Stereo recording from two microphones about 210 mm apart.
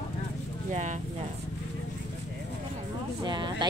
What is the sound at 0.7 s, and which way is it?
Speech, 35° right (ahead or behind).